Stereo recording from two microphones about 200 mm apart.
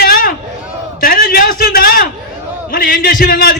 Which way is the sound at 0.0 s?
45° left (ahead or behind).